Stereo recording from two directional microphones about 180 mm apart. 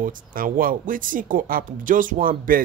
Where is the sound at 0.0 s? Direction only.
50° right (ahead or behind).